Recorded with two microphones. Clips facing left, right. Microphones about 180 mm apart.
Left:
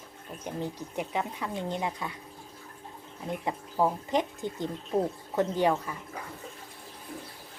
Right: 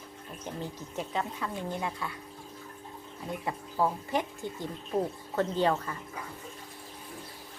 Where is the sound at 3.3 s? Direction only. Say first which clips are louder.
Left 2 dB; 20° left (ahead or behind).